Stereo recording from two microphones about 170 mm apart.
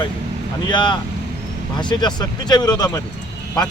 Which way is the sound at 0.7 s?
25° left (ahead or behind).